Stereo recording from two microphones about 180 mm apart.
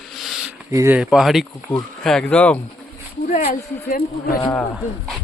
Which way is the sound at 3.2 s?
45° left (ahead or behind).